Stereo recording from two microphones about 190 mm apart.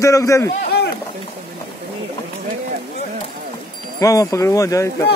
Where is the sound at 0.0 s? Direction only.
15° left (ahead or behind).